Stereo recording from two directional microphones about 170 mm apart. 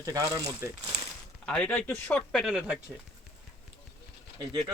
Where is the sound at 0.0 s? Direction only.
20° right (ahead or behind).